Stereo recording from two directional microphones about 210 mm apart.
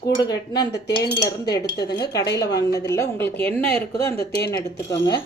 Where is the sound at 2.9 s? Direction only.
10° left (ahead or behind).